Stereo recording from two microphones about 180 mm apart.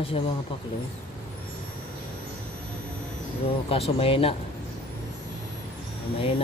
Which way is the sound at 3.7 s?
30° left (ahead or behind).